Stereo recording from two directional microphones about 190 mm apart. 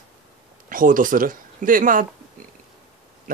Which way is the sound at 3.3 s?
50° right (ahead or behind).